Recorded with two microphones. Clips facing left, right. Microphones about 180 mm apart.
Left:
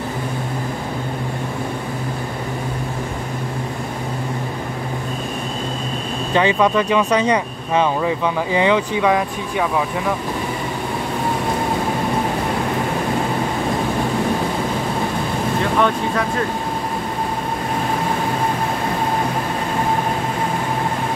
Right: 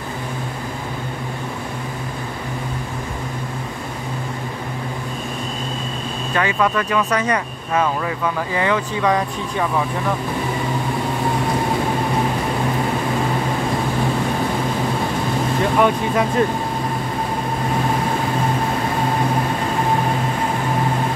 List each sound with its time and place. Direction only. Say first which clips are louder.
6.3 s speech: left 4 dB; 20° left (ahead or behind)
15.8 s speech: right 3 dB; 20° right (ahead or behind)